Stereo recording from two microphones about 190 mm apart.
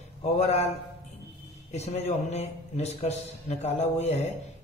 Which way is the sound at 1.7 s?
35° left (ahead or behind).